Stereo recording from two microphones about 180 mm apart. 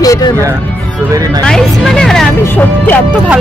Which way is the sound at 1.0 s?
20° right (ahead or behind).